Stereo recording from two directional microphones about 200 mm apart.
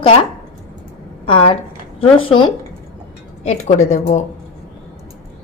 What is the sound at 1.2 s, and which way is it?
A woman's voice, 25° left (ahead or behind).